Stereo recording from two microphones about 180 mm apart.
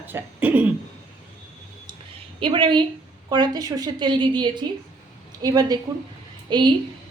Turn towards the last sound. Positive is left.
turn(degrees=-25)  # may be behind; listen again after turning